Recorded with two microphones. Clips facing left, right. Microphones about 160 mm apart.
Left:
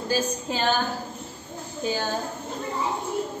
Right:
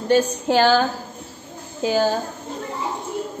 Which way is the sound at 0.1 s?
75° right (ahead or behind).